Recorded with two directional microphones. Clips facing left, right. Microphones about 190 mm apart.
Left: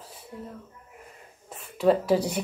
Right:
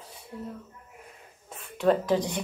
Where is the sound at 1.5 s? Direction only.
Centre (ahead or behind).